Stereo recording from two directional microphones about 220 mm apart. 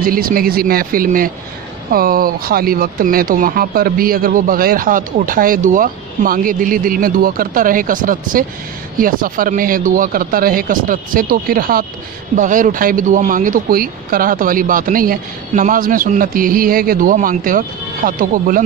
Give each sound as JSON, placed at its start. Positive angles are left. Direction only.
{"t": 0.0, "sound": "speech", "side_deg": -40}